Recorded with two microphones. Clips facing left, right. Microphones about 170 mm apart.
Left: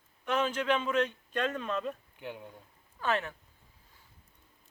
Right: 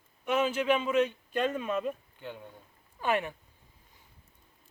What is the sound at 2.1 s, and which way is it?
Speech, 15° left (ahead or behind).